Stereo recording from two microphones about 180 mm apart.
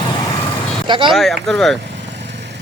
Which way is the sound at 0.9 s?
25° right (ahead or behind).